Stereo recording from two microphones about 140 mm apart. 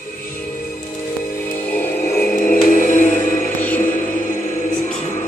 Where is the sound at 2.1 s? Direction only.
85° left; by 3.4 s 70° left (ahead or behind).